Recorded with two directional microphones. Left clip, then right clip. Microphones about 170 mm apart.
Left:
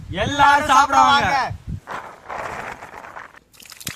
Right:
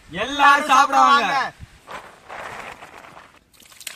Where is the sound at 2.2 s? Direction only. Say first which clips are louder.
Left 5 dB; 10° left (ahead or behind).